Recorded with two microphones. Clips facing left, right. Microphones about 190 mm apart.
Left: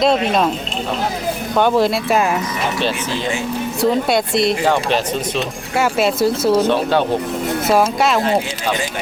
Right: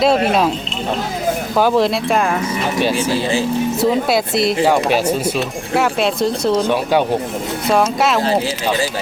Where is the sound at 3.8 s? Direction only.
Centre (ahead or behind).